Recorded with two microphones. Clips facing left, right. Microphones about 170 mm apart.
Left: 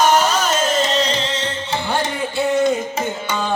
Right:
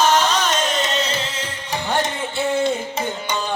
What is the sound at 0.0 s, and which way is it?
Music, 10° left (ahead or behind).